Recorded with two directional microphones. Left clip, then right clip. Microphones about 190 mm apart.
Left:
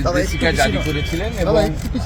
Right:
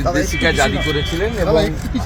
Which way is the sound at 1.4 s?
10° left (ahead or behind).